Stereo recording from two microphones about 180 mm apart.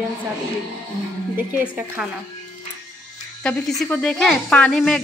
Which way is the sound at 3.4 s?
5° left (ahead or behind).